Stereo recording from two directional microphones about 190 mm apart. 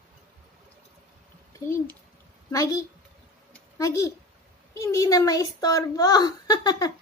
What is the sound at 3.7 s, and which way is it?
A child's voice, 15° left (ahead or behind).